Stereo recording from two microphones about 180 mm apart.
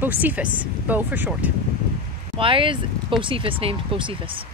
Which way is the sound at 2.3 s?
30° right (ahead or behind).